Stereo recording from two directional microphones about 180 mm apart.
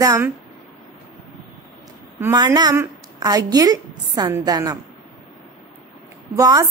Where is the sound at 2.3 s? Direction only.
20° right (ahead or behind).